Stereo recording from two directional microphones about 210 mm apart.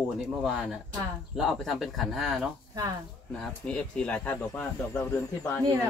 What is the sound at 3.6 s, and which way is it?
Speech, 5° left (ahead or behind).